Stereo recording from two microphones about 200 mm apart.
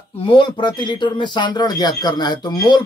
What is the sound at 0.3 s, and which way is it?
Speech, 25° left (ahead or behind).